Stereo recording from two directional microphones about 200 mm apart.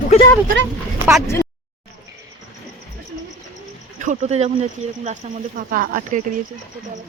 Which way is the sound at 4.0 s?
35° right (ahead or behind).